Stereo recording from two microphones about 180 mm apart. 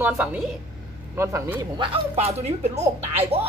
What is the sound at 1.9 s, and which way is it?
A woman's voice, 35° right (ahead or behind).